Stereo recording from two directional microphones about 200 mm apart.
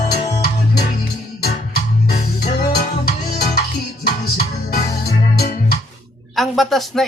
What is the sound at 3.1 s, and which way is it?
Music, 50° left (ahead or behind).